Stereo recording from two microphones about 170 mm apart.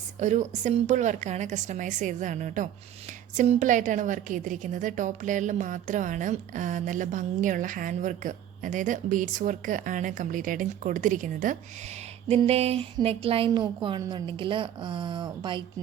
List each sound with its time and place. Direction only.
0.2 s a woman's voice: 45° right (ahead or behind)
12.3 s speech: 35° right (ahead or behind)